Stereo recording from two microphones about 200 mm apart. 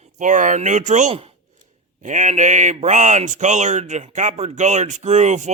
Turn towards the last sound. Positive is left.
turn(degrees=-35)  # may be behind; listen again after turning